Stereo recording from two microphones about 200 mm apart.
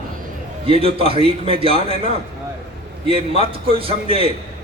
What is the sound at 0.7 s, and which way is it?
A man's voice, 30° right (ahead or behind).